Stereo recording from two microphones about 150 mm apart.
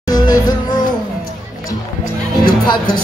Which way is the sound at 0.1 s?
25° left (ahead or behind).